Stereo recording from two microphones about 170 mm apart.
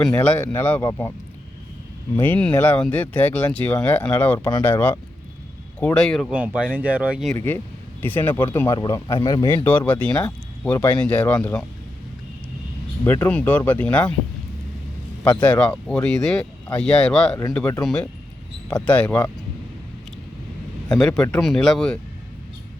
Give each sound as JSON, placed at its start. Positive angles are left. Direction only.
{"t": 0.0, "sound": "speech", "side_deg": 5}
{"t": 2.1, "sound": "speech", "side_deg": 10}
{"t": 6.3, "sound": "speech", "side_deg": -10}
{"t": 7.3, "sound": "speech", "side_deg": 10}
{"t": 9.6, "sound": "speech", "side_deg": 10}
{"t": 13.1, "sound": "speech", "side_deg": 10}
{"t": 15.4, "sound": "speech", "side_deg": 10}
{"t": 21.1, "sound": "speech", "side_deg": 15}
{"t": 21.4, "sound": "speech", "side_deg": 0}